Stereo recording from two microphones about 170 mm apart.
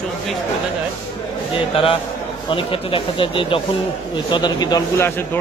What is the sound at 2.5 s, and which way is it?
A man's voice, 30° left (ahead or behind).